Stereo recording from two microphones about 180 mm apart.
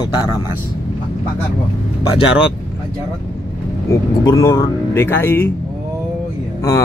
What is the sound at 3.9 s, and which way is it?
Speech, 15° left (ahead or behind).